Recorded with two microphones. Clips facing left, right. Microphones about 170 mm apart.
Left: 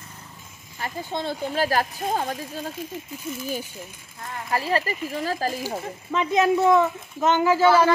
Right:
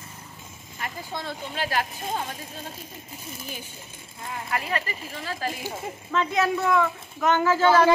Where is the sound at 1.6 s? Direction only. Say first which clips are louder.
Left 4 dB; 40° left (ahead or behind).